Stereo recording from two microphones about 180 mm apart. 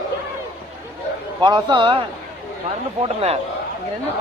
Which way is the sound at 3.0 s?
35° right (ahead or behind).